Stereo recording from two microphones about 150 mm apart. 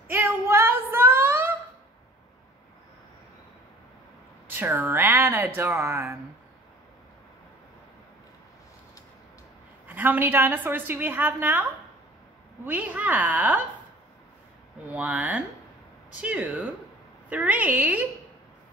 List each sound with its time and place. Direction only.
0.1 s a sound: 15° right (ahead or behind)
4.5 s a woman's voice: 15° right (ahead or behind)
9.8 s a woman's voice: 15° right (ahead or behind)
12.6 s a woman's voice: 10° right (ahead or behind)
14.9 s a woman's voice: 10° right (ahead or behind)